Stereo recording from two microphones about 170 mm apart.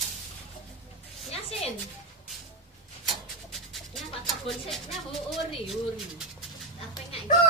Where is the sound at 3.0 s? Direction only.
Centre (ahead or behind).